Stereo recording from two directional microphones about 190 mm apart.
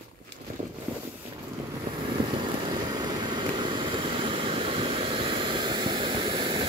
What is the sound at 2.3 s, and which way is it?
Vehicle, 25° right (ahead or behind).